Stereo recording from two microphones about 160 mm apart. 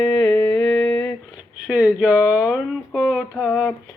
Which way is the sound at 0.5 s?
10° left (ahead or behind).